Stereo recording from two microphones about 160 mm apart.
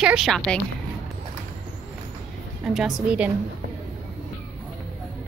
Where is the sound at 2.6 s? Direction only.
5° right (ahead or behind).